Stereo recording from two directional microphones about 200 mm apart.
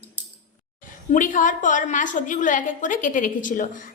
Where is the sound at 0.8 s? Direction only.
40° left (ahead or behind).